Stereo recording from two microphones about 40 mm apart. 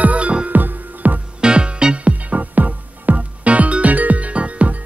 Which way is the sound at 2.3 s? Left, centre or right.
Right.